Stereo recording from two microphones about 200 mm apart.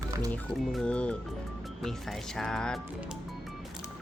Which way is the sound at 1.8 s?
Centre (ahead or behind).